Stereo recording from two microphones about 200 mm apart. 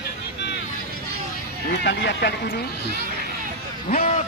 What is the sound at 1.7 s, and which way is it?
Speech, 60° left (ahead or behind).